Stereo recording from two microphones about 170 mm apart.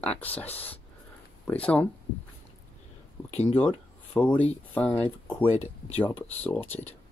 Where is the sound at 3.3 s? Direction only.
40° left (ahead or behind).